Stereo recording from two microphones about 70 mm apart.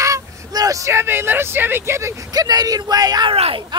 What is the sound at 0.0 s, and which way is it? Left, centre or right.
Vehicle, right.